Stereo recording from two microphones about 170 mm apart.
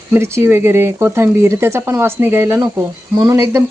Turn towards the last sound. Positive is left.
turn(degrees=-20)  # may be behind; listen again after turning